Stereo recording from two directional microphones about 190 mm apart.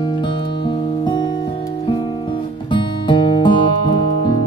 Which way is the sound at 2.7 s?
25° left (ahead or behind).